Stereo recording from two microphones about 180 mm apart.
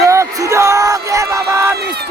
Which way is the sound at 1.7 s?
65° right (ahead or behind).